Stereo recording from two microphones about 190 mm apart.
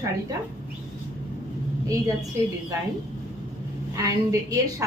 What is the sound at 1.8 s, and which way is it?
Speech, 15° right (ahead or behind).